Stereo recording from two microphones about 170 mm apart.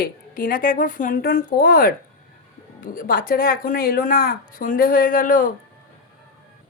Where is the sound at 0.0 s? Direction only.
55° left (ahead or behind).